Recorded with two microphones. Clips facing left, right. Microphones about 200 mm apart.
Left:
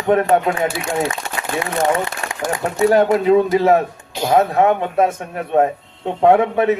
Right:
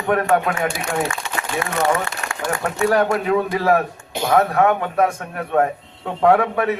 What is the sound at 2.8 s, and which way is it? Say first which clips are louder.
A man's voice: left 5 dB; 20° left (ahead or behind).